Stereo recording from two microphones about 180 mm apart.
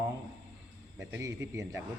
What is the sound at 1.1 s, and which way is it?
Speech, 15° right (ahead or behind).